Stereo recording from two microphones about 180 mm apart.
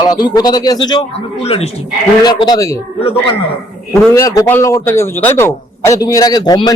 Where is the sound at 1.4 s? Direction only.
35° left (ahead or behind).